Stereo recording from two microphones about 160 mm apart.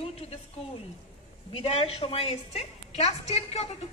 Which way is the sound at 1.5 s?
35° left (ahead or behind).